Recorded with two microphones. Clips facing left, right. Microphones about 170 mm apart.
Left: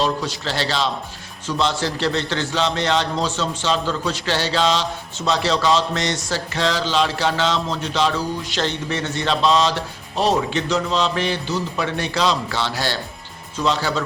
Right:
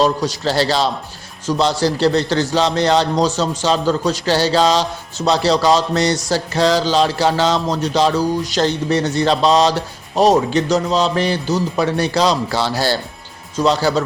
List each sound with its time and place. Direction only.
0.0 s a man's voice: 40° right (ahead or behind)